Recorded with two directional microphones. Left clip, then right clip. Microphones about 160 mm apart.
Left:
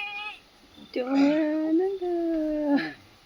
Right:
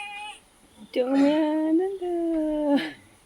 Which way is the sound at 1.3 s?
25° right (ahead or behind).